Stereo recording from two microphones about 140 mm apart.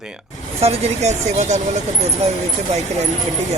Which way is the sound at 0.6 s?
50° right (ahead or behind).